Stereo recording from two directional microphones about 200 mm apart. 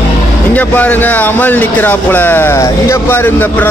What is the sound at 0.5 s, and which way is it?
Speech, 10° left (ahead or behind).